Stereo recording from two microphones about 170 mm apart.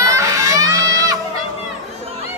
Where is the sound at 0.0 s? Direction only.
20° right (ahead or behind).